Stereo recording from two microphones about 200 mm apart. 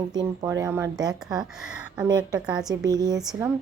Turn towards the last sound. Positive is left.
turn(degrees=-20)  # may be behind; listen again after turning